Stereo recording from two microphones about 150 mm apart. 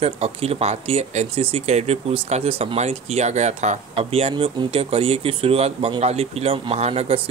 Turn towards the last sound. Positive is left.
turn(degrees=-40)  # may be behind; listen again after turning